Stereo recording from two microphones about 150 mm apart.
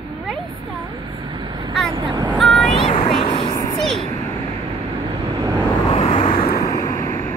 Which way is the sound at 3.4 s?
25° left (ahead or behind).